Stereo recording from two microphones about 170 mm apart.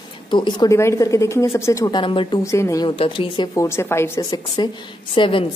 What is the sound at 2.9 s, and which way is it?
Speech, 30° left (ahead or behind).